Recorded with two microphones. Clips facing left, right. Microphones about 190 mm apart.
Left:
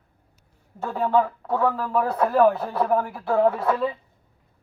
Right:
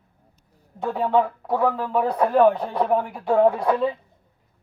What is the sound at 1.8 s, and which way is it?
Speech, 25° right (ahead or behind).